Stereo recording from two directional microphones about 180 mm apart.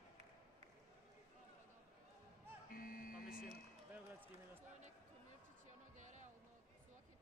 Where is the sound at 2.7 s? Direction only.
55° left (ahead or behind).